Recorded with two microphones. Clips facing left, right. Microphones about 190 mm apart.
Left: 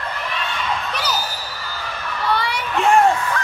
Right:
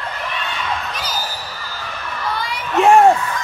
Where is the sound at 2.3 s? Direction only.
65° left (ahead or behind).